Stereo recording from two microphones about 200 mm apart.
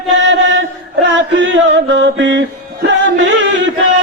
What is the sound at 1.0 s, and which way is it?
Music, 65° right (ahead or behind).